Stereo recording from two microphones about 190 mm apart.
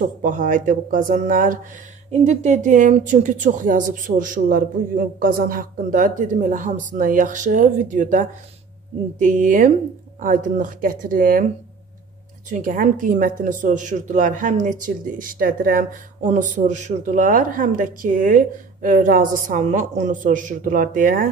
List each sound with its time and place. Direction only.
0.2 s speech: 45° right (ahead or behind)
12.4 s speech: 45° right (ahead or behind)